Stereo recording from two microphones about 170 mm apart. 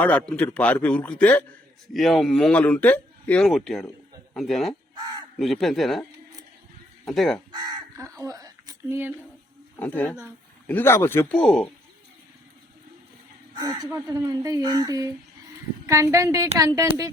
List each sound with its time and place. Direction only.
0.0 s a man's voice: 10° left (ahead or behind)
7.5 s crow: 25° right (ahead or behind)
8.2 s a sound: 20° right (ahead or behind)
9.7 s a man's voice: 10° left (ahead or behind)
10.1 s speech: 10° right (ahead or behind)
10.7 s a man's voice: 10° left (ahead or behind)
13.5 s speech: 25° right (ahead or behind)